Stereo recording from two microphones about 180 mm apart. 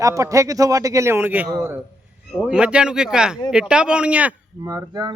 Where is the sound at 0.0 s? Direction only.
20° right (ahead or behind).